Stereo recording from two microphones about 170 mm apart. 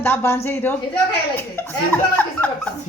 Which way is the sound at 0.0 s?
10° left (ahead or behind).